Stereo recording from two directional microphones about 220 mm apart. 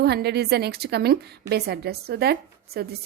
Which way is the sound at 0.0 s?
45° right (ahead or behind).